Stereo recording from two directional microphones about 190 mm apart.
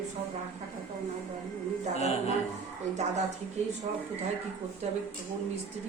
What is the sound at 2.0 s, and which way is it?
Speech, 35° left (ahead or behind).